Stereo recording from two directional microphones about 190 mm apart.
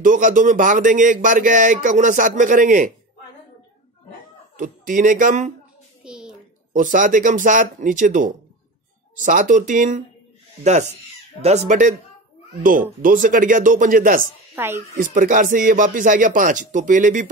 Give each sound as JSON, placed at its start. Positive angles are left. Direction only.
{"t": 0.0, "sound": "a man's voice", "side_deg": -45}
{"t": 4.6, "sound": "a man's voice", "side_deg": -45}
{"t": 6.0, "sound": "a sound", "side_deg": -5}
{"t": 6.7, "sound": "a man's voice", "side_deg": -45}
{"t": 13.0, "sound": "a man's voice", "side_deg": -45}
{"t": 14.5, "sound": "speech", "side_deg": -10}
{"t": 15.0, "sound": "a man's voice", "side_deg": -45}